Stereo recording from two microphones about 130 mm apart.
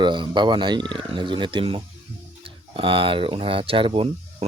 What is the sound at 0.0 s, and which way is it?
A man's voice, 35° right (ahead or behind).